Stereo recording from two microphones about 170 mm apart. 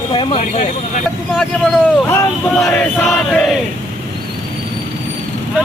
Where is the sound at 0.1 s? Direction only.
30° left (ahead or behind).